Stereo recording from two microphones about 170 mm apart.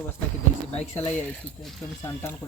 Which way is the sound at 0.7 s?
10° left (ahead or behind).